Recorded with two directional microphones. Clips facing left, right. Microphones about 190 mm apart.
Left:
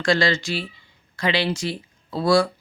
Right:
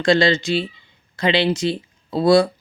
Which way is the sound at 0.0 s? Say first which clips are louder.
Right 5 dB; 20° right (ahead or behind).